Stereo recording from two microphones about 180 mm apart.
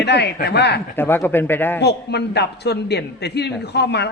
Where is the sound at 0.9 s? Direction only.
10° left (ahead or behind).